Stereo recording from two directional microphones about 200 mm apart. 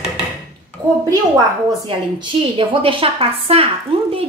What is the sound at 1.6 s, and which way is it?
A woman's voice, 25° right (ahead or behind).